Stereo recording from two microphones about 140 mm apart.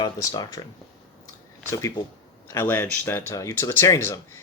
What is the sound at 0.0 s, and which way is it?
Speech, 25° left (ahead or behind).